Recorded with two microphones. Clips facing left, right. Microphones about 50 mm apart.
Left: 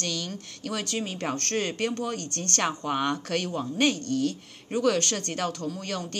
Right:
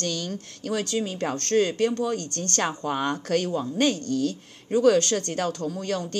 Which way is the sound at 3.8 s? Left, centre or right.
Left.